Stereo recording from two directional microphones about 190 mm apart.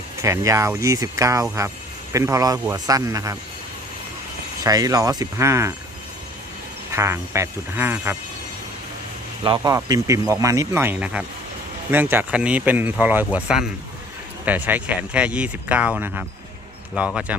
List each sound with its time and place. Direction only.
0.2 s speech: 15° right (ahead or behind)
4.6 s speech: 20° right (ahead or behind)
6.9 s speech: 15° right (ahead or behind)
9.4 s speech: 20° right (ahead or behind)